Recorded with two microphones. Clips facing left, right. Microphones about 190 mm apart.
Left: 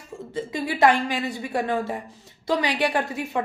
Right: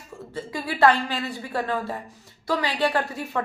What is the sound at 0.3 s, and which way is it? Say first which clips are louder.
A woman's voice: left 2 dB; 20° left (ahead or behind).